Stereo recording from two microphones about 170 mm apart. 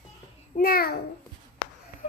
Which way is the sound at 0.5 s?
55° left (ahead or behind).